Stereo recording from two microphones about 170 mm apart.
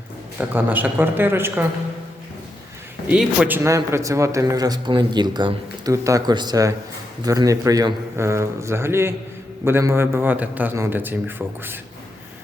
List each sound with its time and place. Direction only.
0.3 s a man's voice: 10° right (ahead or behind)
3.1 s a man's voice: 10° right (ahead or behind)